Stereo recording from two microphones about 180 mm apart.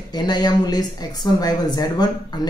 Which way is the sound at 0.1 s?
20° left (ahead or behind).